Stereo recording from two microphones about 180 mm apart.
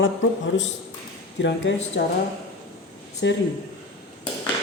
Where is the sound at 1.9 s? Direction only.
70° left (ahead or behind).